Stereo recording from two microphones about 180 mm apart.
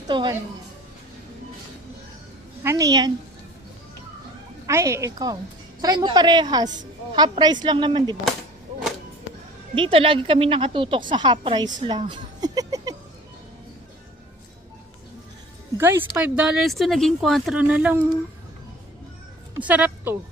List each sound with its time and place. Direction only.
0.1 s a woman's voice: 25° right (ahead or behind)
2.6 s a woman's voice: 20° right (ahead or behind)
4.6 s a woman's voice: 15° right (ahead or behind)
9.7 s a woman's voice: 30° right (ahead or behind)
15.8 s a woman's voice: 10° right (ahead or behind)
19.6 s a woman's voice: 10° right (ahead or behind)